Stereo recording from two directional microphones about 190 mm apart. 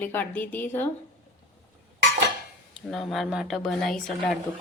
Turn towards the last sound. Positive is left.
turn(degrees=0)  # may be behind; listen again after turning